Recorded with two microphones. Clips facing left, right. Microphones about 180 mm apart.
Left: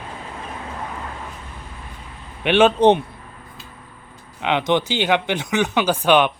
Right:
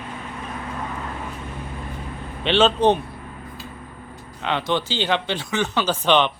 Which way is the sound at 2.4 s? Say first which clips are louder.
Left 3 dB; 15° left (ahead or behind).